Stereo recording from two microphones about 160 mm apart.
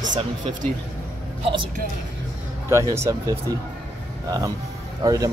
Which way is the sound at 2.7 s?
15° right (ahead or behind).